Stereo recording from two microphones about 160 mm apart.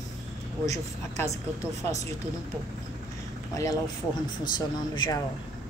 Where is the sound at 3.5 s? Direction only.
20° left (ahead or behind).